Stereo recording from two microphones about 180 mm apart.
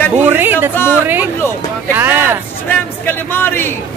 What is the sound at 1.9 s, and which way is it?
Speech, 10° right (ahead or behind).